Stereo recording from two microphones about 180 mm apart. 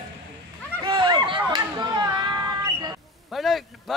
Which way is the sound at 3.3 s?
Centre (ahead or behind).